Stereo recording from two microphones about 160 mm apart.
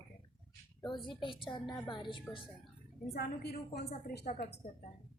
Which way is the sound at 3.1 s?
85° left.